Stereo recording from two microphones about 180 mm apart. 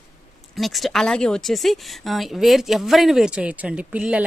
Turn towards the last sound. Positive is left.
turn(degrees=-5)  # may be behind; listen again after turning